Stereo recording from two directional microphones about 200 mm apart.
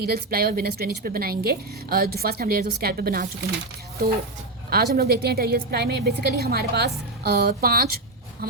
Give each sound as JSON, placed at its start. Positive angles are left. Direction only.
{"t": 0.0, "sound": "a woman's voice", "side_deg": -50}
{"t": 4.7, "sound": "a woman's voice", "side_deg": -50}